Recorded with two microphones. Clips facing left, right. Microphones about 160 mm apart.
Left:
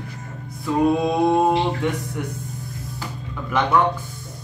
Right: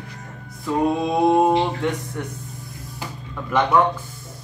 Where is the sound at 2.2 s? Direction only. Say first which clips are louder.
Left 2 dB; 5° left (ahead or behind).